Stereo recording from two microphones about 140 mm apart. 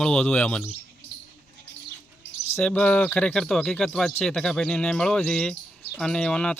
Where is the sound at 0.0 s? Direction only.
5° left (ahead or behind).